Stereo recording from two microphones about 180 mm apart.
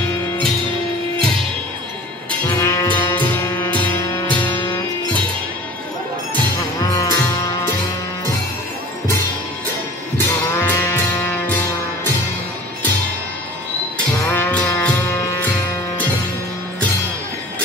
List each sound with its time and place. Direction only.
2.4 s music: 15° left (ahead or behind)
6.8 s music: 20° left (ahead or behind)
10.1 s music: 15° left (ahead or behind)
14.3 s music: 10° left (ahead or behind)